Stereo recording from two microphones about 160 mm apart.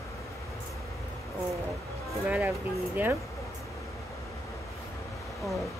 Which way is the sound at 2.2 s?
10° right (ahead or behind).